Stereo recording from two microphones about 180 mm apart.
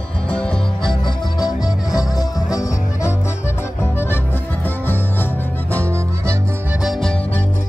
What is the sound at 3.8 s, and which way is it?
Accordion, 15° left (ahead or behind).